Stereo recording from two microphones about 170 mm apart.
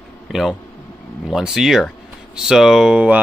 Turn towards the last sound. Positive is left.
turn(degrees=-5)  # may be behind; listen again after turning